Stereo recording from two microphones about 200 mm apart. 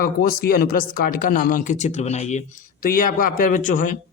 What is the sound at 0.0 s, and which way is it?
Speech, 45° left (ahead or behind).